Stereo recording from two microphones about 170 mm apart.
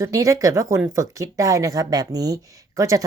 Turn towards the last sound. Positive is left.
turn(degrees=-20)  # may be behind; listen again after turning